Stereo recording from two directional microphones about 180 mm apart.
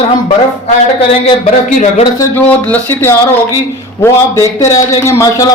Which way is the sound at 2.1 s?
10° left (ahead or behind).